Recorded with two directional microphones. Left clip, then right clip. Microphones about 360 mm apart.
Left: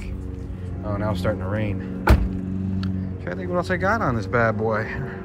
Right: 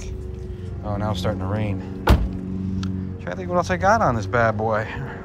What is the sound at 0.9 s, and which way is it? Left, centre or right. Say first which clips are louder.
Speech: left 1 dB; centre.